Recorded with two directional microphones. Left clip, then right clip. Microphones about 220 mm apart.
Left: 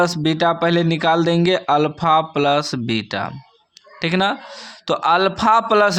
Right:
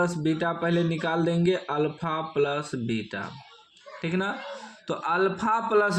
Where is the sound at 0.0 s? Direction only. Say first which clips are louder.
Left 9 dB; 45° left (ahead or behind).